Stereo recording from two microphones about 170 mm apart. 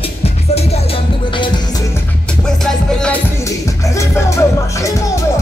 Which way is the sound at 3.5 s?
20° left (ahead or behind).